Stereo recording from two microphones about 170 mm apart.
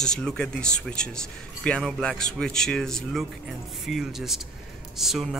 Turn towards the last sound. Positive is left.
turn(degrees=0)  # may be behind; listen again after turning